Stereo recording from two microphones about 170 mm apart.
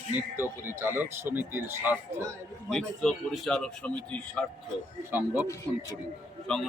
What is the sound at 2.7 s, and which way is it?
Speech, 5° left (ahead or behind).